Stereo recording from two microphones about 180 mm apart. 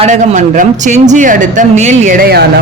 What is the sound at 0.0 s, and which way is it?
Speech, 45° right (ahead or behind).